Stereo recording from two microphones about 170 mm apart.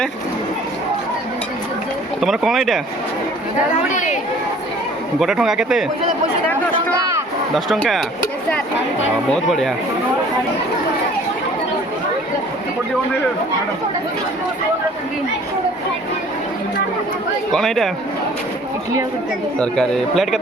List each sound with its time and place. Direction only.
2.2 s speech: centre (ahead or behind)
3.7 s a woman's voice: 45° left (ahead or behind)
5.2 s speech: centre (ahead or behind)
7.5 s speech: centre (ahead or behind)
9.3 s speech: centre (ahead or behind)
17.5 s speech: centre (ahead or behind)
19.5 s speech: 5° left (ahead or behind)